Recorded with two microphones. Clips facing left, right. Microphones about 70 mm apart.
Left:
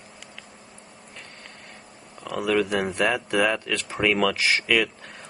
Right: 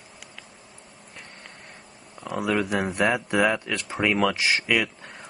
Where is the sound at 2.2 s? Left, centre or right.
Centre.